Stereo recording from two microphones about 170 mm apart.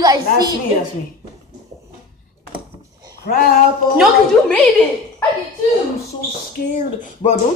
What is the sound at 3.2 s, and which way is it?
Speech, 60° left (ahead or behind).